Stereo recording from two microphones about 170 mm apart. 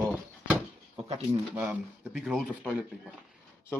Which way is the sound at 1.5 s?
5° right (ahead or behind).